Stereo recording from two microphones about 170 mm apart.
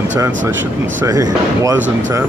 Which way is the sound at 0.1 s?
10° right (ahead or behind).